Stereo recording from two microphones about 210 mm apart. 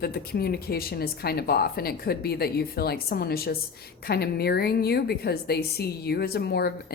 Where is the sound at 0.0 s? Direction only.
50° left (ahead or behind).